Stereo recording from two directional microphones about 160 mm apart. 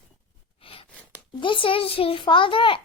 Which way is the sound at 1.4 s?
30° left (ahead or behind).